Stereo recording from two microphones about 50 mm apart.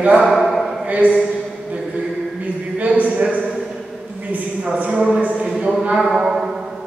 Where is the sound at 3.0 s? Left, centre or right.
Right.